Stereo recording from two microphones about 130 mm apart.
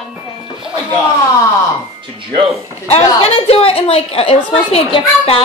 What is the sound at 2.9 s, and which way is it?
A woman's voice, 50° left (ahead or behind).